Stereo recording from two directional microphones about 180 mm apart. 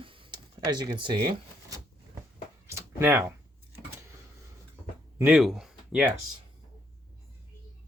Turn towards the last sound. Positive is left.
turn(degrees=-5)  # may be behind; listen again after turning